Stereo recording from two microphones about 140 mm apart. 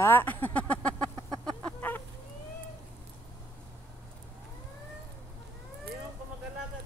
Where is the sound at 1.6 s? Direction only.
15° left (ahead or behind).